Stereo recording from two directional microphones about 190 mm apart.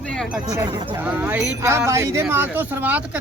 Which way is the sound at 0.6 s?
15° right (ahead or behind).